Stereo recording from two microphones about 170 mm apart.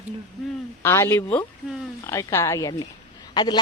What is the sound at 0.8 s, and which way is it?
Speech, 15° left (ahead or behind).